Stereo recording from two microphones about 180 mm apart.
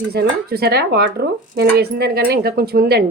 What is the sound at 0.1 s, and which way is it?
Speech, 60° right (ahead or behind).